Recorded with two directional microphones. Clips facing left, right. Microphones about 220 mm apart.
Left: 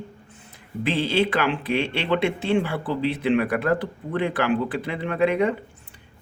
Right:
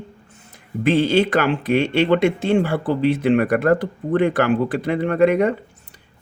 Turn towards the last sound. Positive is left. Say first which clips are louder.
# right 5 dB
turn(degrees=-45)  # may be behind; listen again after turning